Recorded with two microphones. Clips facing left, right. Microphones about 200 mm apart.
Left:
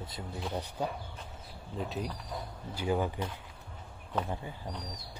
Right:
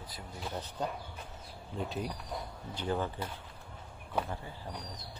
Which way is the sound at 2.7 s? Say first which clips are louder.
Left 3 dB; 10° left (ahead or behind).